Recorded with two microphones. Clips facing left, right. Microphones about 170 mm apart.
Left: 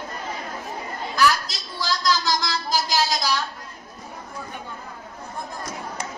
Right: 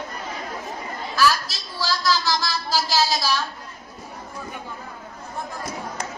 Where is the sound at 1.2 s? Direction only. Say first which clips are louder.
Even; 15° left (ahead or behind).